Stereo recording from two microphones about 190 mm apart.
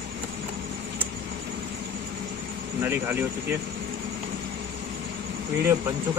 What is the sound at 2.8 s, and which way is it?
Speech, 10° right (ahead or behind).